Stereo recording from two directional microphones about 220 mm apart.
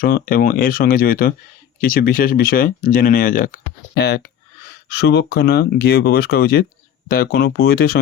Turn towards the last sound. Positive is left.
turn(degrees=45)  # may be behind; listen again after turning